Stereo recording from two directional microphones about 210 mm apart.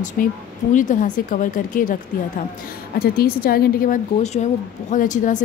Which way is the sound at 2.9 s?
45° left (ahead or behind).